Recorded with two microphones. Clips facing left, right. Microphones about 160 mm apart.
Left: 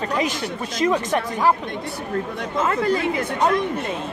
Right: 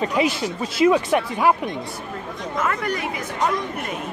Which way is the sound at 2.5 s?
25° left (ahead or behind).